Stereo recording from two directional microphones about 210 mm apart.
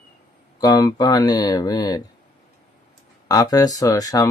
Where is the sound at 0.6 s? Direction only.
20° left (ahead or behind).